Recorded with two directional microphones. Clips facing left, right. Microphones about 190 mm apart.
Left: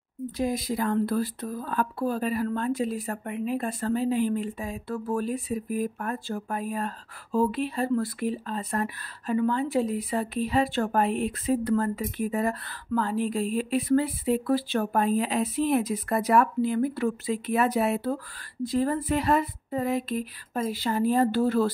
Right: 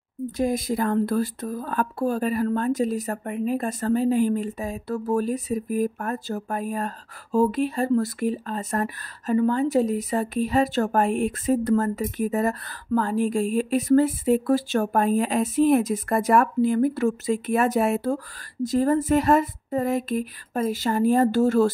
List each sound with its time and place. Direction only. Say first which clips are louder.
0.4 s speech: right 4 dB; 50° right (ahead or behind)